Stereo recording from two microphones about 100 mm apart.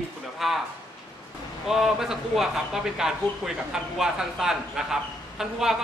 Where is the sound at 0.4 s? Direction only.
Centre (ahead or behind).